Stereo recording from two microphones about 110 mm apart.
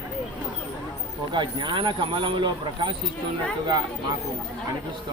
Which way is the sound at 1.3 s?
45° right (ahead or behind).